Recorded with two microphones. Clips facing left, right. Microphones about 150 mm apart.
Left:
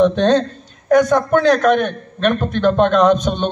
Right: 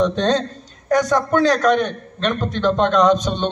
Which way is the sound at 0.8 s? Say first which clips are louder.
Left 4 dB; 55° left (ahead or behind).